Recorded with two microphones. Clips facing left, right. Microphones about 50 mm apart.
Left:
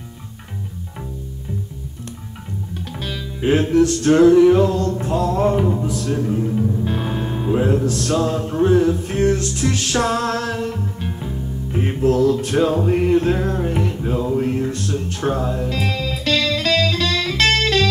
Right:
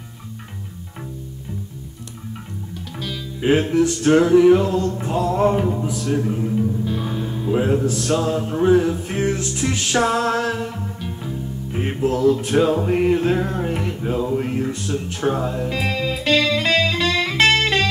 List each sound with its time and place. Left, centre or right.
3.3 s music: centre
5.6 s speech: centre
5.9 s music: centre
6.8 s music: left
7.5 s music: centre
11.7 s music: centre